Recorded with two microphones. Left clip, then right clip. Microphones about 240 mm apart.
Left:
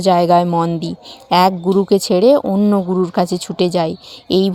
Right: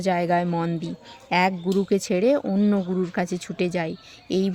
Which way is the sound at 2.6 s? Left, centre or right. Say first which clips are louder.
Left 9 dB; centre.